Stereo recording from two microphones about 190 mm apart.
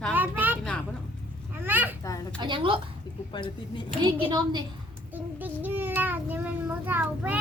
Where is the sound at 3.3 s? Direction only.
25° left (ahead or behind).